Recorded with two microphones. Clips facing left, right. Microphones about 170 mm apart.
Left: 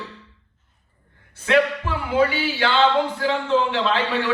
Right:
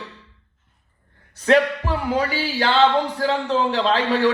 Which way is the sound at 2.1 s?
40° right (ahead or behind).